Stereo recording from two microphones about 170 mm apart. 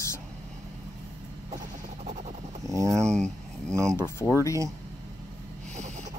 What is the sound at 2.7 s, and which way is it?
Speech, 20° right (ahead or behind).